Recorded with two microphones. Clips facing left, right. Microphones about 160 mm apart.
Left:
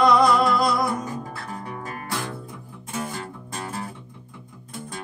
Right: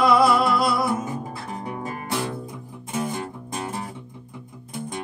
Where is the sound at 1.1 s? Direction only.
20° right (ahead or behind).